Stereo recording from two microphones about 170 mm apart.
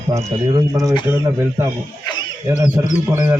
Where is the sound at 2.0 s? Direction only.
25° left (ahead or behind).